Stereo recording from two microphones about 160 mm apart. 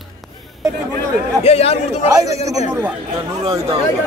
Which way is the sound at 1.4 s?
40° left (ahead or behind).